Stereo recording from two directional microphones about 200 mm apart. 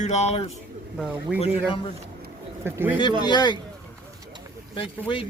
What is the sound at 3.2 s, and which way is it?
Speech, 20° left (ahead or behind).